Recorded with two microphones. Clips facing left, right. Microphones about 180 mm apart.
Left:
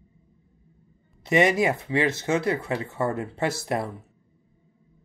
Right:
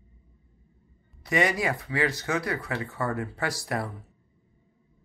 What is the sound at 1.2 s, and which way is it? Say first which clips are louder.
Speech: left 5 dB; 20° left (ahead or behind).